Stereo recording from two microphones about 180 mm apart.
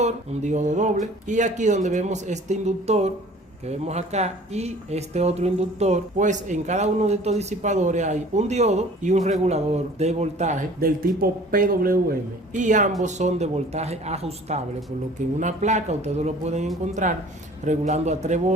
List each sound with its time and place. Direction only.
0.0 s speech: 40° right (ahead or behind)
12.5 s speech: 45° right (ahead or behind)